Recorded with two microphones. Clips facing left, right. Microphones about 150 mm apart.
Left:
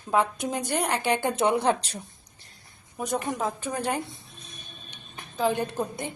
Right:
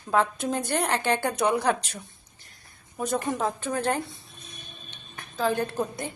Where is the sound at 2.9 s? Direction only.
15° left (ahead or behind).